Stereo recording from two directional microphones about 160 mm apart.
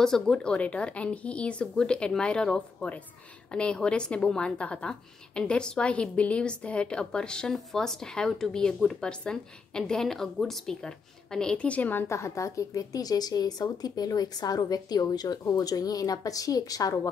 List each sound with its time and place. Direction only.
0.0 s a woman's voice: 5° left (ahead or behind); by 17.1 s 20° left (ahead or behind)